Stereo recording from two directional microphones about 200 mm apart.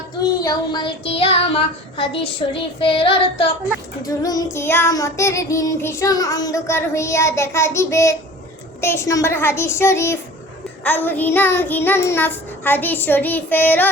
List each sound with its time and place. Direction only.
0.4 s child singing: 25° left (ahead or behind)